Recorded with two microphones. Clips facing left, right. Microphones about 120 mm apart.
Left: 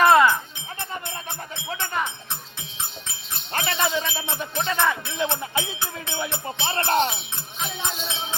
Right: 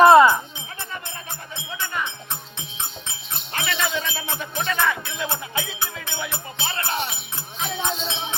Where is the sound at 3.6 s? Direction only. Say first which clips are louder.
Left 2 dB; 40° left (ahead or behind).